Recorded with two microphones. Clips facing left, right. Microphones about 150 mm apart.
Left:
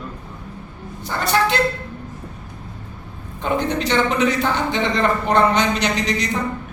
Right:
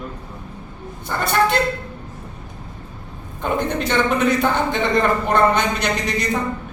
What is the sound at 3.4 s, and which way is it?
A man's voice, 55° right (ahead or behind).